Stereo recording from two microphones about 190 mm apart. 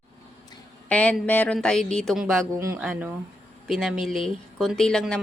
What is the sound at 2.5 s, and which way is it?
Speech, 15° right (ahead or behind).